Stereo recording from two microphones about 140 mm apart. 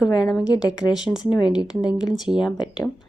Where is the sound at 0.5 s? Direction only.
30° left (ahead or behind).